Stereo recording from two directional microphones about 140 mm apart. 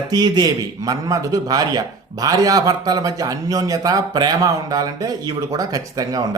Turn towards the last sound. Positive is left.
turn(degrees=-25)  # may be behind; listen again after turning